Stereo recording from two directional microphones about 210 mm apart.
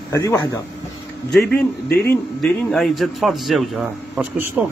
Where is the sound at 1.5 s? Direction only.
50° left (ahead or behind).